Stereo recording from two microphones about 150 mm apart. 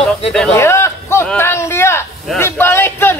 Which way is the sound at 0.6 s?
15° left (ahead or behind).